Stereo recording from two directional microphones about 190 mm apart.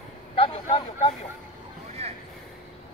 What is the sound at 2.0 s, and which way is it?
Vehicle, 35° right (ahead or behind).